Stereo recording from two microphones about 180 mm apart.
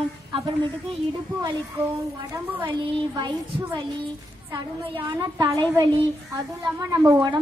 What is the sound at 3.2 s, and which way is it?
Speech, 25° right (ahead or behind).